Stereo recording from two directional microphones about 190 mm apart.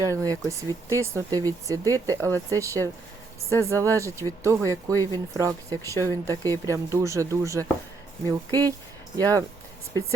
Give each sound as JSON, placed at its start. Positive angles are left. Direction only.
{"t": 0.0, "sound": "speech", "side_deg": -15}